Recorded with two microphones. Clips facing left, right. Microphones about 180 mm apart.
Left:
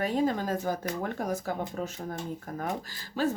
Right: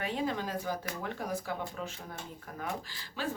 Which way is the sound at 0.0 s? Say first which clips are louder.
Left 6 dB; 40° left (ahead or behind).